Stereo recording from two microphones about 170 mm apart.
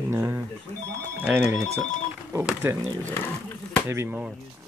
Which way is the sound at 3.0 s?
15° left (ahead or behind).